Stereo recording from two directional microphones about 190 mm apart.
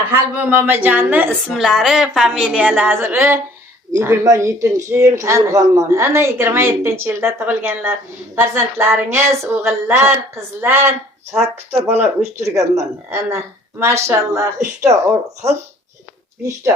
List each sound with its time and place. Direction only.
0.1 s a woman's voice: 10° right (ahead or behind)
13.7 s speech: 15° right (ahead or behind)